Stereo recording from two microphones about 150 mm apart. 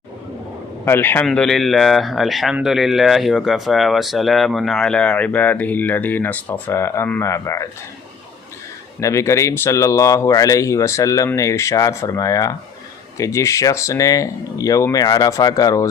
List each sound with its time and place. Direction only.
0.9 s speech: 15° left (ahead or behind)
9.0 s speech: 20° left (ahead or behind)